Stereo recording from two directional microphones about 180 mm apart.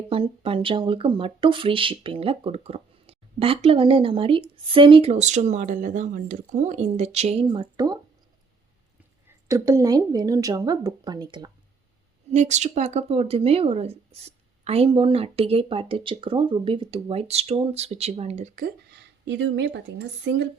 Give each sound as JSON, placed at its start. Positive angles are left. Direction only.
{"t": 0.1, "sound": "a woman's voice", "side_deg": -30}
{"t": 9.5, "sound": "a woman's voice", "side_deg": -20}
{"t": 12.3, "sound": "a woman's voice", "side_deg": -40}